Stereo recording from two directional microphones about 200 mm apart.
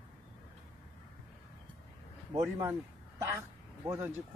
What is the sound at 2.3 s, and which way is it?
Speech, 15° right (ahead or behind).